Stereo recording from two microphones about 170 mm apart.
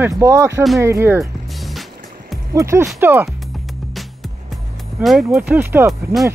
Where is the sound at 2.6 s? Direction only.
15° right (ahead or behind).